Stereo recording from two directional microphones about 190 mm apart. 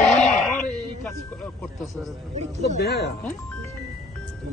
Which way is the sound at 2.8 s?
60° left (ahead or behind).